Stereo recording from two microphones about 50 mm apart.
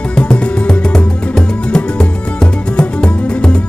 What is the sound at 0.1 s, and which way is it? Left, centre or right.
Music, left.